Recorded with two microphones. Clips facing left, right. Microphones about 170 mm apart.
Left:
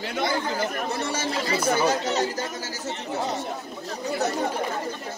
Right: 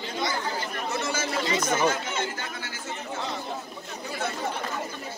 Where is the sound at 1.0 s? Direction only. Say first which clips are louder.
Left 1 dB; 30° left (ahead or behind).